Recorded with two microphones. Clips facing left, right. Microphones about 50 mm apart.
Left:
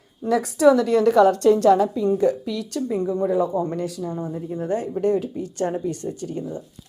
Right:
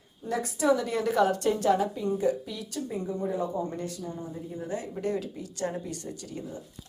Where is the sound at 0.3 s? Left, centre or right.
Left.